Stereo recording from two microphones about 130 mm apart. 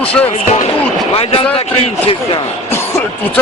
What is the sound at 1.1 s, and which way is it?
Speech, 45° left (ahead or behind).